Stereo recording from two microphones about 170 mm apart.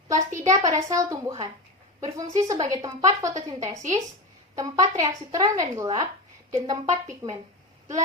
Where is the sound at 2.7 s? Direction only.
20° right (ahead or behind).